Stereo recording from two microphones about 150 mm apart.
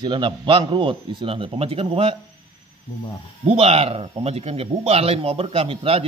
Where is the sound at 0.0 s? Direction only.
30° right (ahead or behind).